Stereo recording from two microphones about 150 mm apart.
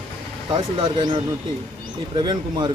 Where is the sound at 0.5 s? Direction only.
30° right (ahead or behind).